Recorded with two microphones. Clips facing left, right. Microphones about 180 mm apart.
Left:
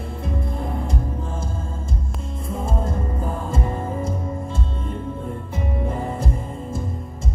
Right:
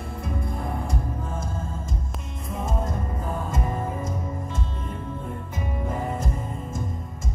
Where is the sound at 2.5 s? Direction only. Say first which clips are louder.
Left 2 dB; 30° left (ahead or behind).